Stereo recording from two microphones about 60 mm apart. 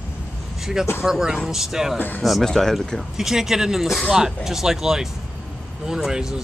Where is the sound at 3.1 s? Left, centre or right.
Centre.